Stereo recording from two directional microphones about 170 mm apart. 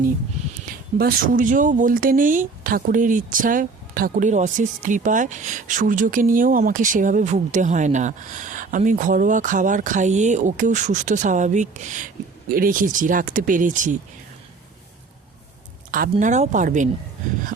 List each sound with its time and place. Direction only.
0.4 s a sound: 45° right (ahead or behind)
0.9 s speech: 55° right (ahead or behind)
16.2 s speech: 45° right (ahead or behind)